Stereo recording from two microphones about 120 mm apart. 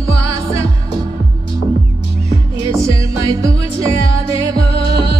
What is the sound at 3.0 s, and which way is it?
Music, 30° right (ahead or behind).